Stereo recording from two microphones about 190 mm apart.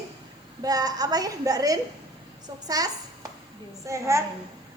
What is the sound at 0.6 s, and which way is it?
A woman's voice, 20° right (ahead or behind).